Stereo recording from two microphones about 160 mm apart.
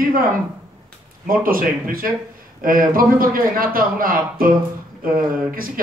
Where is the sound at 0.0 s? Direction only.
60° right (ahead or behind).